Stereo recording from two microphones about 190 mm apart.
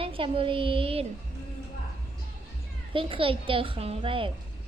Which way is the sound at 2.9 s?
25° right (ahead or behind).